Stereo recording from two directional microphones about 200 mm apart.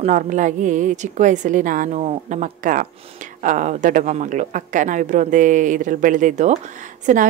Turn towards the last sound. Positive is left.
turn(degrees=-40)  # may be behind; listen again after turning